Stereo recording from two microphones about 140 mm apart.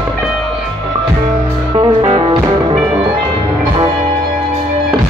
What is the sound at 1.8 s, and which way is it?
Music, 40° right (ahead or behind).